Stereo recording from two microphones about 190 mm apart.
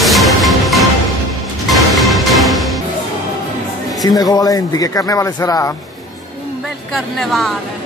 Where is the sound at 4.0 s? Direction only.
20° left (ahead or behind).